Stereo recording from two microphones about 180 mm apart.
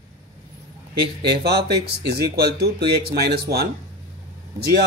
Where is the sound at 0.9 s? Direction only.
65° right (ahead or behind).